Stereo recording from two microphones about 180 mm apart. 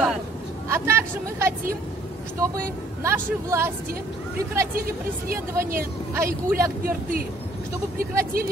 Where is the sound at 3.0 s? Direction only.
15° right (ahead or behind).